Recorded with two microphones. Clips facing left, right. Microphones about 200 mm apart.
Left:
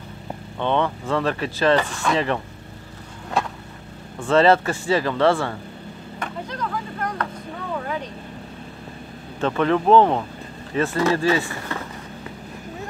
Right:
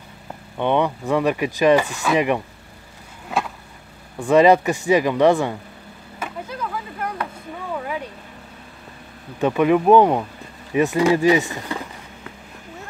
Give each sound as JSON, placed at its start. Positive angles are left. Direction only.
{"t": 0.6, "sound": "speech", "side_deg": -15}
{"t": 4.2, "sound": "speech", "side_deg": -15}
{"t": 6.1, "sound": "a sound", "side_deg": -5}
{"t": 7.7, "sound": "vehicle", "side_deg": -10}
{"t": 9.4, "sound": "speech", "side_deg": -10}